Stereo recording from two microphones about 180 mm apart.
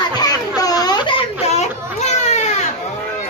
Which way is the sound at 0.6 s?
20° left (ahead or behind).